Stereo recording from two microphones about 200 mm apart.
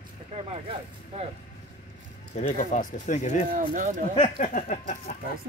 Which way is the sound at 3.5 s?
40° right (ahead or behind).